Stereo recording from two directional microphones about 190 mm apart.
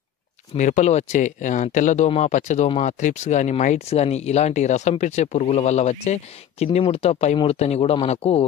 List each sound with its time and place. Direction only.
0.6 s speech: 40° left (ahead or behind)